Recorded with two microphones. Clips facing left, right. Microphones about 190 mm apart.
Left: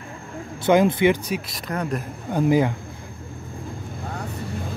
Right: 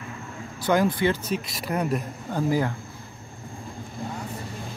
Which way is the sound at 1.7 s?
10° right (ahead or behind).